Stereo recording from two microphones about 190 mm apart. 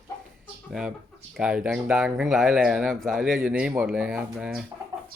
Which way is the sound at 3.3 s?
50° right (ahead or behind).